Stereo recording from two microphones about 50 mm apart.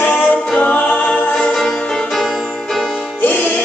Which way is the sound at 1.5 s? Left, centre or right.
Centre.